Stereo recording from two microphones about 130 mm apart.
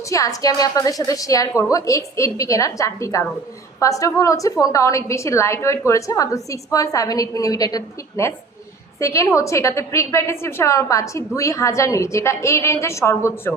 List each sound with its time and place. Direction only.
0.1 s a woman's voice: 25° left (ahead or behind)